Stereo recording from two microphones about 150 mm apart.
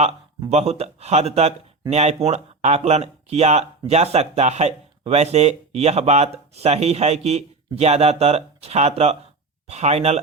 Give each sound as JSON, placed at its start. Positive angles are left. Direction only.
{"t": 0.5, "sound": "speech", "side_deg": -45}